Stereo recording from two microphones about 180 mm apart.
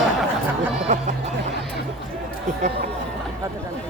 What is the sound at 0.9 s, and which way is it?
Music, 40° right (ahead or behind).